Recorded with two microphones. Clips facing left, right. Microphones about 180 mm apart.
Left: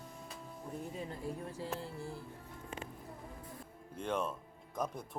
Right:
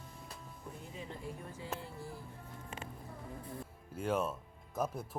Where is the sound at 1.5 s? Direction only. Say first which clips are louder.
Left 2 dB; 35° left (ahead or behind).